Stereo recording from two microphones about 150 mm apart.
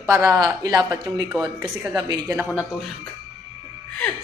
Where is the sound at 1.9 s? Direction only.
25° right (ahead or behind).